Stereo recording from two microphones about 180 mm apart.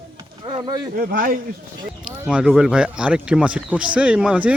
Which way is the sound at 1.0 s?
55° right (ahead or behind).